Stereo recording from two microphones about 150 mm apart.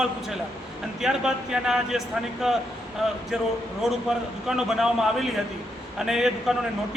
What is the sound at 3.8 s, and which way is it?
Speech, 5° right (ahead or behind).